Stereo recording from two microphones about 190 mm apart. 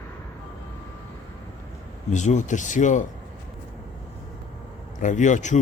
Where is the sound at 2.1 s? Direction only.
40° left (ahead or behind).